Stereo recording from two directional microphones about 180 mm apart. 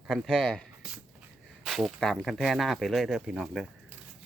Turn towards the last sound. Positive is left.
turn(degrees=-5)  # may be behind; listen again after turning